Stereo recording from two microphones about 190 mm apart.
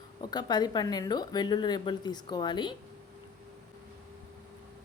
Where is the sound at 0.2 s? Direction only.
20° left (ahead or behind).